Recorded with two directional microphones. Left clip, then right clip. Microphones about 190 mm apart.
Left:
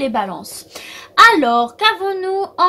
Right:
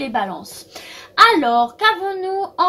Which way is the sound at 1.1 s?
45° left (ahead or behind).